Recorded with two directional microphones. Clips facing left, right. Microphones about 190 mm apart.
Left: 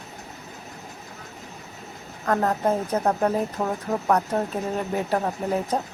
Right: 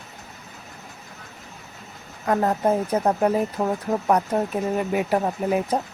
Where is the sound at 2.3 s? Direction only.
10° right (ahead or behind).